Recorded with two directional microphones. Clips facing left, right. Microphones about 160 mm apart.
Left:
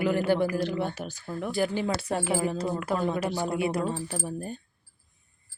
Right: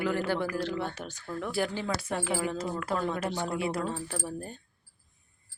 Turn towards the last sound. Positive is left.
turn(degrees=15)  # may be behind; listen again after turning